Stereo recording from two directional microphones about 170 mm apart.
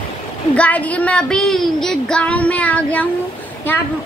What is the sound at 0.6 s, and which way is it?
Speech, 10° left (ahead or behind).